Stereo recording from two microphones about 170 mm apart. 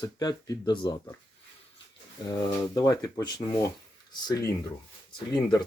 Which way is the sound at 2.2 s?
25° left (ahead or behind).